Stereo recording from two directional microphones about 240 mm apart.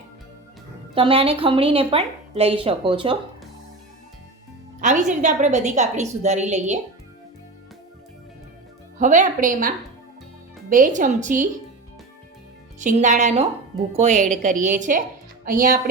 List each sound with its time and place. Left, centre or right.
0.9 s a woman's voice: right
4.8 s a woman's voice: right
9.0 s a woman's voice: right
12.8 s a woman's voice: right